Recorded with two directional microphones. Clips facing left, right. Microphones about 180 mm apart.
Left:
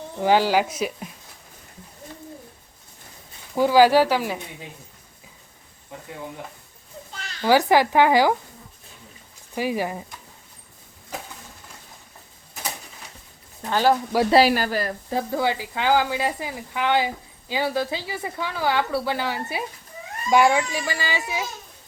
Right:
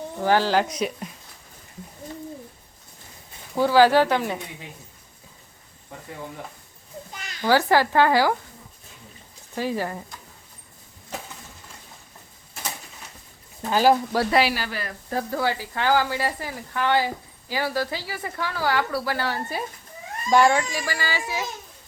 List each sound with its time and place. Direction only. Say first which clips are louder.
0.2 s speech: left 2 dB; 15° left (ahead or behind)
3.5 s speech: left 1 dB; 15° left (ahead or behind)
7.1 s a sound: left 1 dB; 15° right (ahead or behind)
7.4 s speech: left 2 dB; 15° left (ahead or behind)
9.6 s speech: left 2 dB; 15° left (ahead or behind)
13.6 s speech: right 1 dB; 10° right (ahead or behind)
14.3 s speech: left 5 dB; 35° left (ahead or behind)
14.5 s speech: left 7 dB; 45° left (ahead or behind)
15.1 s speech: left 1 dB; 15° left (ahead or behind)
20.7 s speech: left 1 dB; 20° left (ahead or behind)